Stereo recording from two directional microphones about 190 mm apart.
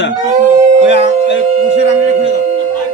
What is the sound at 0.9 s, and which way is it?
Speech, 70° left (ahead or behind).